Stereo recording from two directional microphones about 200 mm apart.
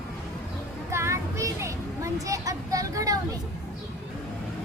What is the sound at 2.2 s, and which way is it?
Speech, 15° right (ahead or behind).